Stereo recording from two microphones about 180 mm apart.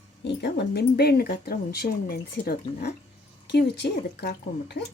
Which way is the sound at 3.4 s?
70° left (ahead or behind).